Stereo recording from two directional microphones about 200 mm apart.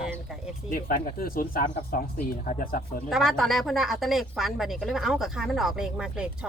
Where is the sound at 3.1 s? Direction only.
Centre (ahead or behind).